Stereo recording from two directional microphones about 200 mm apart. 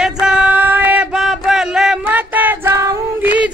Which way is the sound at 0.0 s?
5° right (ahead or behind).